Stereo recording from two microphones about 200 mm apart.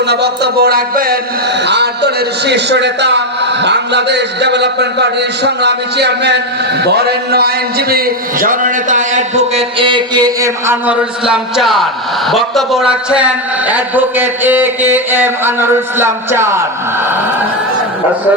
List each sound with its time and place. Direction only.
0.1 s speech: 55° right (ahead or behind)
1.6 s a man's voice: 55° right (ahead or behind); by 16.6 s 10° right (ahead or behind)